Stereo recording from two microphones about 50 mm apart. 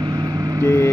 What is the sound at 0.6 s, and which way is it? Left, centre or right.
Speech, left.